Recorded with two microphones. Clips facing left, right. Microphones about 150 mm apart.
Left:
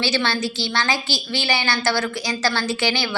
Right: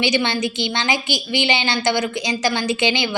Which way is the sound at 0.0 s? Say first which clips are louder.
Right 3 dB; 15° right (ahead or behind).